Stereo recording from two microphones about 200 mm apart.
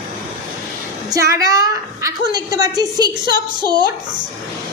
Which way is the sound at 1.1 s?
15° right (ahead or behind).